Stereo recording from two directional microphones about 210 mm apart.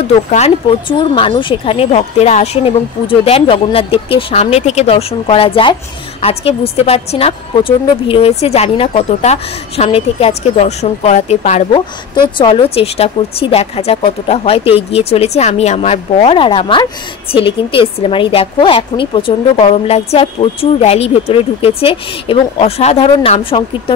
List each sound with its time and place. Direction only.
0.3 s a woman's voice: 30° left (ahead or behind)